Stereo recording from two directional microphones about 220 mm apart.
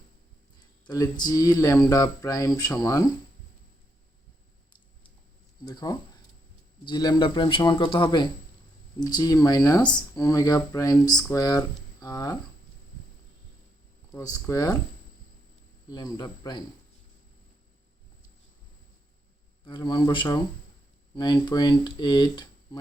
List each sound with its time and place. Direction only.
0.9 s speech: 15° left (ahead or behind)
5.6 s speech: 20° left (ahead or behind)
14.1 s speech: 15° left (ahead or behind)
15.9 s speech: 20° left (ahead or behind)
19.6 s speech: 20° left (ahead or behind)